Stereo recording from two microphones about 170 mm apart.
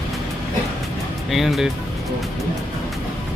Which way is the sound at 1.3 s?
Centre (ahead or behind).